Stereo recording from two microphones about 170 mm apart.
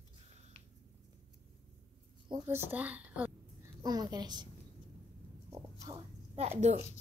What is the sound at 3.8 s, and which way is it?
Speech, 25° right (ahead or behind).